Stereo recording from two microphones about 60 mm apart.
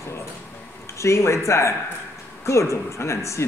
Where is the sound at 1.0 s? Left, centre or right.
Left.